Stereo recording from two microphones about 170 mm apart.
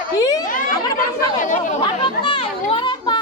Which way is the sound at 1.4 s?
45° left (ahead or behind).